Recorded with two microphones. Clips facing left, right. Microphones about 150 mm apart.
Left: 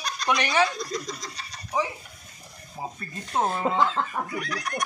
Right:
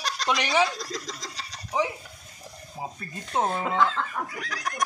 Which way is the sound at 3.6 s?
35° left (ahead or behind).